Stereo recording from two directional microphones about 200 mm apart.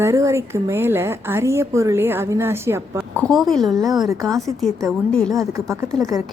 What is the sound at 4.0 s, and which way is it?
A woman's voice, 15° right (ahead or behind).